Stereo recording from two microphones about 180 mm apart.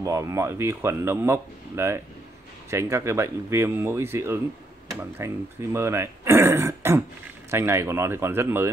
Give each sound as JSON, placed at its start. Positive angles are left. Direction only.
{"t": 0.0, "sound": "speech", "side_deg": -15}